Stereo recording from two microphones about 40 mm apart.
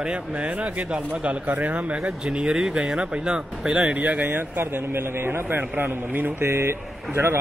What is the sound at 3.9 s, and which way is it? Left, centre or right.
Speech, right.